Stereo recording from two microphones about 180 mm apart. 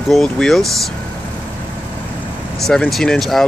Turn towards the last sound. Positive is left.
turn(degrees=0)  # may be behind; listen again after turning